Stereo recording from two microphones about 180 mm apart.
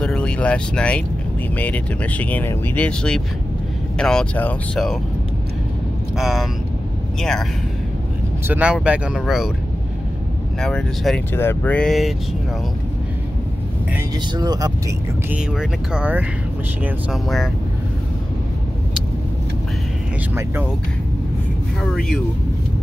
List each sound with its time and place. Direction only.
0.0 s speech: 5° left (ahead or behind)
6.1 s speech: centre (ahead or behind)
8.5 s speech: 10° right (ahead or behind)
10.6 s speech: 5° left (ahead or behind)
13.9 s speech: 20° right (ahead or behind)
15.2 s speech: 5° right (ahead or behind)